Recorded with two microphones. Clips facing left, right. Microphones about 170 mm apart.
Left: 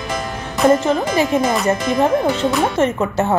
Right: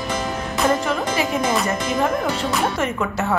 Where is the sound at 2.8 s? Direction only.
25° left (ahead or behind).